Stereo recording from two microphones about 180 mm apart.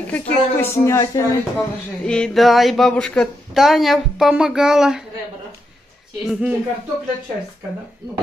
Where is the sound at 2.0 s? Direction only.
5° left (ahead or behind).